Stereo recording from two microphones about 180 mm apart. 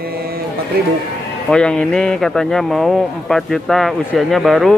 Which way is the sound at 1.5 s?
5° left (ahead or behind).